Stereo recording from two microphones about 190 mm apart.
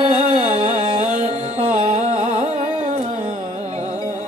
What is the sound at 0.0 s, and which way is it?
Music, 35° right (ahead or behind).